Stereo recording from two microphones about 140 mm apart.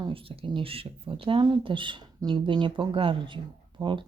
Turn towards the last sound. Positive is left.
turn(degrees=-35)  # may be behind; listen again after turning